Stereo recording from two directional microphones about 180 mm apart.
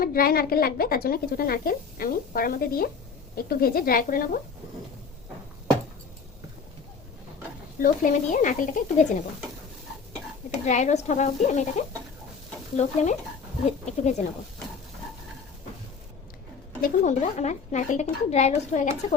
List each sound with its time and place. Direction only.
0.0 s speech: 55° left (ahead or behind)
7.8 s speech: 45° left (ahead or behind)
10.7 s a woman's voice: 40° left (ahead or behind)
16.8 s a woman's voice: 40° left (ahead or behind)